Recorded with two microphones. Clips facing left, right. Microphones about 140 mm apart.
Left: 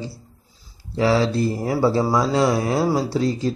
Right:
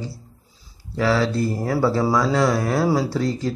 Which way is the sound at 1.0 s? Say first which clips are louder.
Left 1 dB; 20° left (ahead or behind).